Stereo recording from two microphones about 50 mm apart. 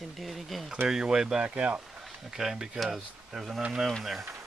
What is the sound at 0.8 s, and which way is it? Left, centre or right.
Speech, centre.